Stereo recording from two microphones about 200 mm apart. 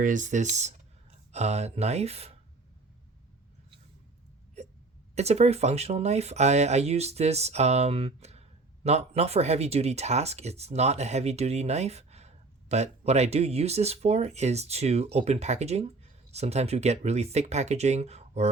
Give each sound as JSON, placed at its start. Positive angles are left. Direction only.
{"t": 0.0, "sound": "speech", "side_deg": -40}
{"t": 4.6, "sound": "hiccup", "side_deg": -35}
{"t": 5.1, "sound": "speech", "side_deg": -30}